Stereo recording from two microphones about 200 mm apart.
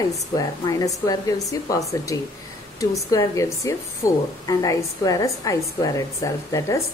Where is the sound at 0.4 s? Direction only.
20° left (ahead or behind).